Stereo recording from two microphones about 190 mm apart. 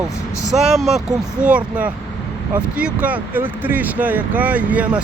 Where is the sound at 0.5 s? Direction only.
Centre (ahead or behind).